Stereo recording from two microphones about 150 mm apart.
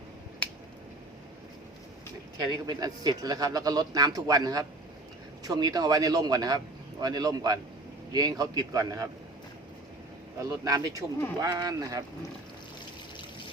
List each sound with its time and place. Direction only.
2.5 s speech: 25° right (ahead or behind)
10.3 s speech: 25° right (ahead or behind)